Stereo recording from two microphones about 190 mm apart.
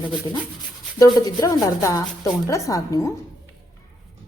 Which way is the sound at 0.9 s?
20° left (ahead or behind).